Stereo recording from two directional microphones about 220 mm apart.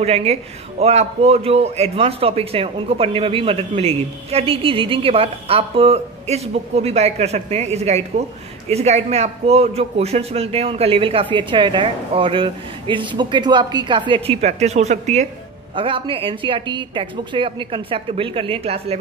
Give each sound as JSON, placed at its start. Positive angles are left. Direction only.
{"t": 0.0, "sound": "a man's voice", "side_deg": -30}